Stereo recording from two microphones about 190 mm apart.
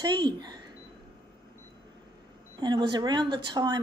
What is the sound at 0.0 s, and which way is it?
Speech, 20° right (ahead or behind).